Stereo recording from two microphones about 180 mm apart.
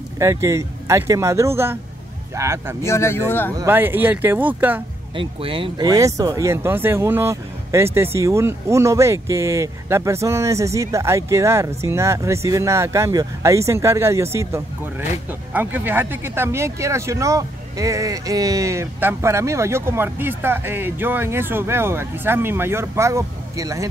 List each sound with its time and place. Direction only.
0.2 s speech: 15° right (ahead or behind)
2.8 s speech: 15° left (ahead or behind)
3.5 s speech: 10° right (ahead or behind)
5.1 s speech: 30° right (ahead or behind)